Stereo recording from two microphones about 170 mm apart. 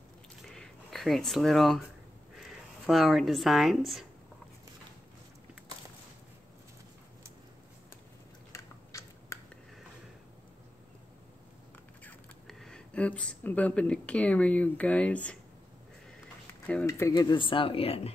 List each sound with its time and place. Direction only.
0.5 s a sound: centre (ahead or behind)
2.3 s speech: centre (ahead or behind)
8.5 s biting: 20° left (ahead or behind)
12.0 s speech: 5° left (ahead or behind)
16.8 s speech: 15° left (ahead or behind); by 18.1 s 35° left (ahead or behind)